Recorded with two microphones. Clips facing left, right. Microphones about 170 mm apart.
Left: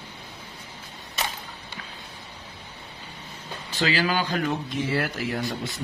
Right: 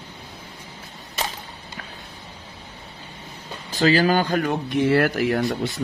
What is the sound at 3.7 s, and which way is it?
Speech, 40° right (ahead or behind).